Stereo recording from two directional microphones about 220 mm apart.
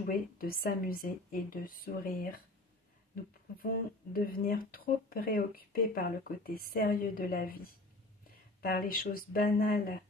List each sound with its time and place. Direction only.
0.0 s speech: 40° left (ahead or behind)
4.1 s speech: 40° left (ahead or behind)